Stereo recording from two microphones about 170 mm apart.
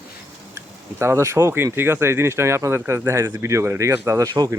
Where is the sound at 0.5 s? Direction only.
15° right (ahead or behind).